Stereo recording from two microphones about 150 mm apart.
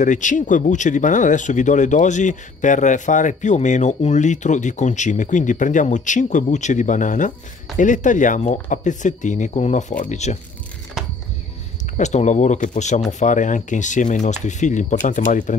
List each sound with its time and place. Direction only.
0.0 s speech: 55° left (ahead or behind)
12.0 s speech: 50° left (ahead or behind)